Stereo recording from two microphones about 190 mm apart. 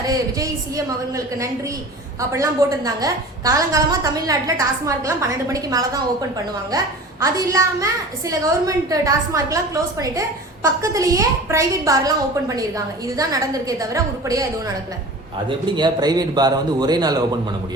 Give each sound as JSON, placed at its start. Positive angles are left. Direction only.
{"t": 0.0, "sound": "a woman's voice", "side_deg": -20}
{"t": 2.3, "sound": "a woman's voice", "side_deg": -15}
{"t": 10.9, "sound": "a woman's voice", "side_deg": -15}
{"t": 15.4, "sound": "a woman's voice", "side_deg": -25}